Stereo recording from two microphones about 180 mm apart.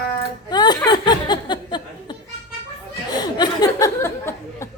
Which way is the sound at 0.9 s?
25° left (ahead or behind).